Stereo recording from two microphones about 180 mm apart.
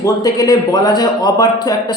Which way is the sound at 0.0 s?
20° left (ahead or behind).